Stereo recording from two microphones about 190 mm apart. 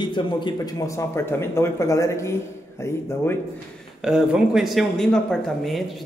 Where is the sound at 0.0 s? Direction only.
25° left (ahead or behind).